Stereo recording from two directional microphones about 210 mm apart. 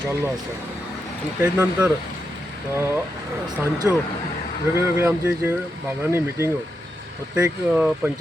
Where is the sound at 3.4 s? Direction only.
20° right (ahead or behind).